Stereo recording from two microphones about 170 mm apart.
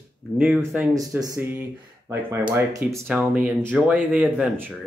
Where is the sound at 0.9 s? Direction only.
20° right (ahead or behind).